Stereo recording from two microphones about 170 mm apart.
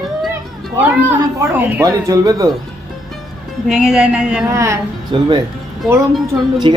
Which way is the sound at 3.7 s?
5° right (ahead or behind).